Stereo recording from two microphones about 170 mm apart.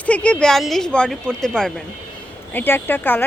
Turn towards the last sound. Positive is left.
turn(degrees=10)  # may be behind; listen again after turning